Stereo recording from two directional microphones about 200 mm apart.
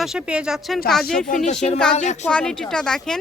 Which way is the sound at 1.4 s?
35° left (ahead or behind).